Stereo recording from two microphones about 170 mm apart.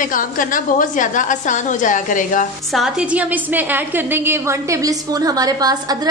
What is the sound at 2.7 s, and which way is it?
A woman's voice, 5° right (ahead or behind).